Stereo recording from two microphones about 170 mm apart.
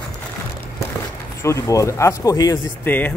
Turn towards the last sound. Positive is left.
turn(degrees=10)  # may be behind; listen again after turning